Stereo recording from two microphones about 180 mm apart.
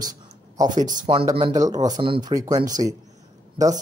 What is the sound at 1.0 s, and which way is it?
A man's voice, 30° right (ahead or behind).